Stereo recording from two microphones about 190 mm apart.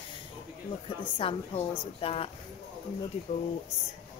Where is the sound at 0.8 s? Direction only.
30° left (ahead or behind).